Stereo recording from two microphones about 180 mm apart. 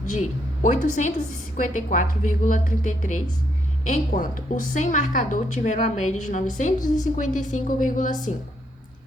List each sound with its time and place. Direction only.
0.0 s a woman's voice: 45° left (ahead or behind)